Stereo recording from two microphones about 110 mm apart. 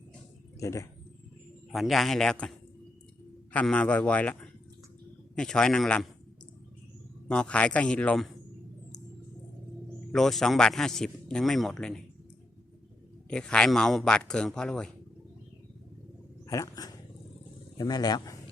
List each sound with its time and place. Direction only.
0.6 s a sound: 30° left (ahead or behind)
1.7 s a man's voice: centre (ahead or behind)
3.5 s speech: 10° left (ahead or behind)
5.4 s speech: 5° left (ahead or behind)
7.3 s speech: 10° left (ahead or behind)
10.1 s a man's voice: 5° left (ahead or behind)
13.3 s speech: 10° left (ahead or behind)
16.5 s speech: 30° left (ahead or behind)